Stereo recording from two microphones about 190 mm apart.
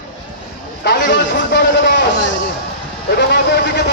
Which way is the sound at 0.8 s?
60° left (ahead or behind).